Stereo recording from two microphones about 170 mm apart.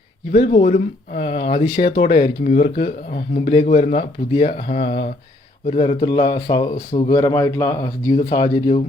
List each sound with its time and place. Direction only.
0.4 s speech: 35° left (ahead or behind)
3.5 s speech: 35° left (ahead or behind); by 8.1 s 15° left (ahead or behind)
8.1 s speech: 25° left (ahead or behind)